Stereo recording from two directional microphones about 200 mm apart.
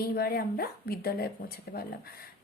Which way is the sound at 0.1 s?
50° left (ahead or behind).